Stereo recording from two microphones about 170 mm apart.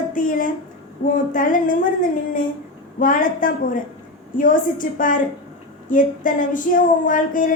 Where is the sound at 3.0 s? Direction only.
50° left (ahead or behind).